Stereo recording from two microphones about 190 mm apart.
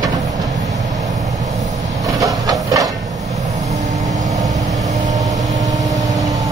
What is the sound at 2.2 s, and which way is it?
Printer, 20° right (ahead or behind).